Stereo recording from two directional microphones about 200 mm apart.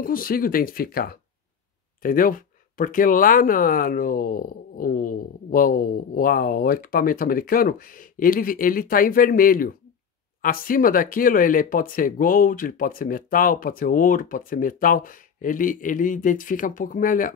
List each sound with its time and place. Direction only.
0.0 s speech: 45° left (ahead or behind)